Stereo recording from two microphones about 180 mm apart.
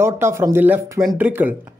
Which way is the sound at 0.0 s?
15° right (ahead or behind).